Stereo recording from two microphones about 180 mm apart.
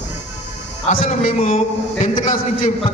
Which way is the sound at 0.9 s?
40° left (ahead or behind).